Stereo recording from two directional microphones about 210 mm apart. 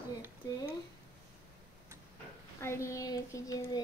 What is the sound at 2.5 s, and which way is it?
Child singing, 15° left (ahead or behind).